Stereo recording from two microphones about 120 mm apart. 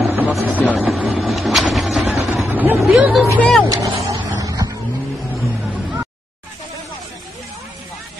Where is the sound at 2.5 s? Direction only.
15° right (ahead or behind).